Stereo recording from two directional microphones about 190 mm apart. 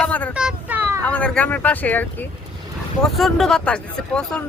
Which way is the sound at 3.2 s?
Centre (ahead or behind).